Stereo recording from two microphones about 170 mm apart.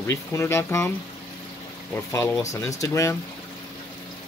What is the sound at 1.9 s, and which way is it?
Speech, 15° left (ahead or behind).